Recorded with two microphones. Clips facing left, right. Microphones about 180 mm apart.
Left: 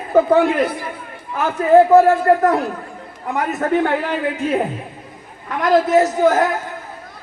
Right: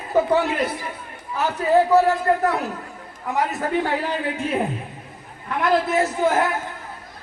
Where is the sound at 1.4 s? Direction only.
50° left (ahead or behind).